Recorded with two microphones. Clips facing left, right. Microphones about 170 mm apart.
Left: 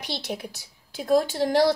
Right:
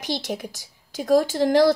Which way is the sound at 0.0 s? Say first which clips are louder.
Right 4 dB; 45° right (ahead or behind).